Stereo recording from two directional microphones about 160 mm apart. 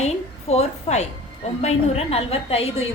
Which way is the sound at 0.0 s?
40° left (ahead or behind).